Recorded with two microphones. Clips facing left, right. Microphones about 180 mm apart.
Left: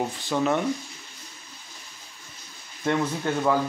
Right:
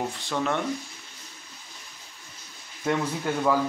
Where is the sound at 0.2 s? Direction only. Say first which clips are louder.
Left 5 dB; 5° left (ahead or behind).